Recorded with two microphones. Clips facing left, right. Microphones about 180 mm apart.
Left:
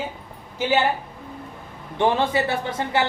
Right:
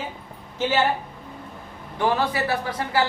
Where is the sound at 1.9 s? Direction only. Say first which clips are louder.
Left 2 dB; 25° left (ahead or behind).